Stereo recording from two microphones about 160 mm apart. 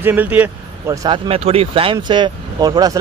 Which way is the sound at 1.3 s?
40° right (ahead or behind).